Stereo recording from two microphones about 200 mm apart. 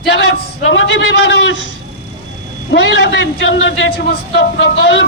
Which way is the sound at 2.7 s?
60° left (ahead or behind).